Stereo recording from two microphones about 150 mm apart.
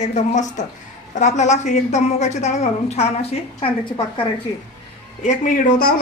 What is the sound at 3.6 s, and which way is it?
Speech, 35° left (ahead or behind).